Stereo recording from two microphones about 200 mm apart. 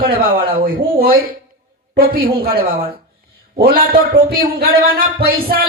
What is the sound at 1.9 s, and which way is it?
A man's voice, 50° right (ahead or behind).